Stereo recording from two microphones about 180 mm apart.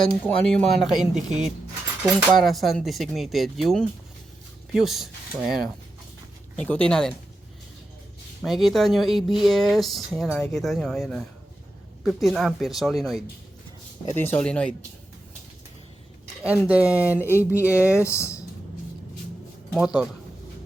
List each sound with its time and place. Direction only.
0.4 s speech: 5° left (ahead or behind)
6.6 s speech: 5° left (ahead or behind)
8.4 s speech: centre (ahead or behind)
14.1 s speech: 10° left (ahead or behind)
16.4 s speech: 5° right (ahead or behind)
18.0 s speech: 15° left (ahead or behind)
19.7 s speech: 5° right (ahead or behind)